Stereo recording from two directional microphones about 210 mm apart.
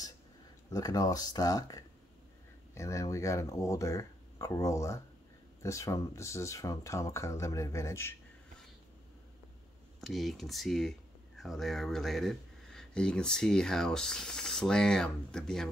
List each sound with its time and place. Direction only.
0.7 s speech: 15° left (ahead or behind)
9.9 s speech: centre (ahead or behind)